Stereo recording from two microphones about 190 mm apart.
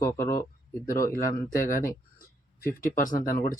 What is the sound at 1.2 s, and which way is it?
Speech, 45° left (ahead or behind).